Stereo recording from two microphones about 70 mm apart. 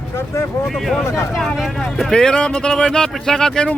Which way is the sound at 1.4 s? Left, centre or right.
Centre.